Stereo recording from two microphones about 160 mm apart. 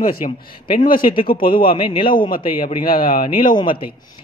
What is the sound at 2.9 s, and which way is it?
Speech, 65° left (ahead or behind).